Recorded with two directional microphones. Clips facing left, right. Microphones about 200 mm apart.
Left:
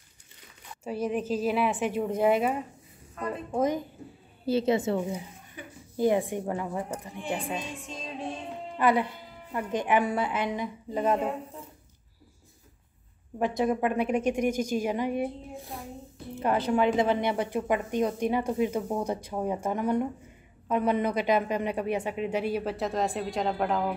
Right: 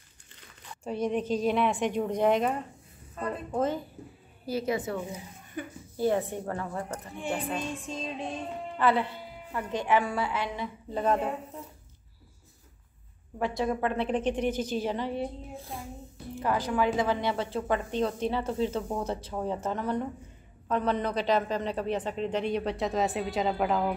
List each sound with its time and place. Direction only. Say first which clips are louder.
0.8 s a woman's voice: even; 5° left (ahead or behind)
4.5 s a woman's voice: left 5 dB; 25° left (ahead or behind)
5.9 s a woman's voice: left 2 dB; 15° left (ahead or behind)
8.7 s a woman's voice: left 1 dB; 15° left (ahead or behind)
13.4 s a woman's voice: left 3 dB; 20° left (ahead or behind); by 23.9 s centre (ahead or behind)